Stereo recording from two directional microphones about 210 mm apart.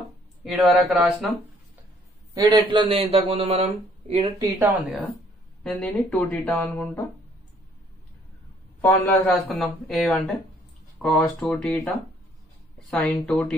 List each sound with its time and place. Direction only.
0.4 s speech: centre (ahead or behind)
2.3 s speech: 20° right (ahead or behind)
4.6 s speech: 5° right (ahead or behind)
5.6 s speech: 5° left (ahead or behind)
8.8 s speech: 10° left (ahead or behind)